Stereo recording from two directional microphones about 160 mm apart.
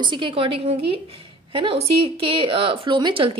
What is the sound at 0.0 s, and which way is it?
A woman's voice, 30° right (ahead or behind).